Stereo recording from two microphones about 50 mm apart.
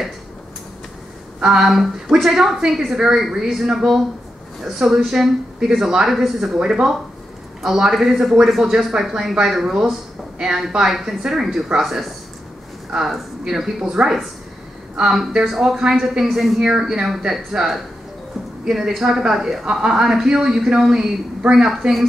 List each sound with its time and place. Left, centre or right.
1.4 s a woman's voice: centre
15.1 s a woman's voice: centre
19.9 s speech: centre
21.4 s a woman's voice: centre
21.6 s a woman's voice: centre